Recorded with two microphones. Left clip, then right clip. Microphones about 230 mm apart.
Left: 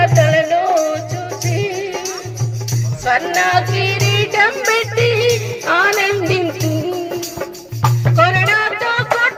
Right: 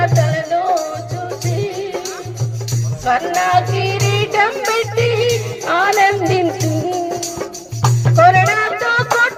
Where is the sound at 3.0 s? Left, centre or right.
Left.